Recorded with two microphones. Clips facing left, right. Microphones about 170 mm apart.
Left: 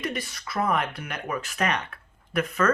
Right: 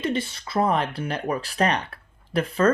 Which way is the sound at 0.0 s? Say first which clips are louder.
Right 6 dB; 30° right (ahead or behind).